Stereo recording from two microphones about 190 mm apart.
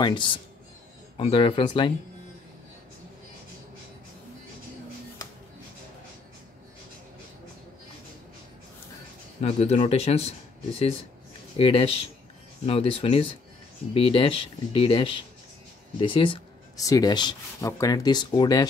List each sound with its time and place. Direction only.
0.0 s speech: 25° left (ahead or behind)
9.4 s speech: 35° left (ahead or behind)
11.5 s speech: 30° left (ahead or behind)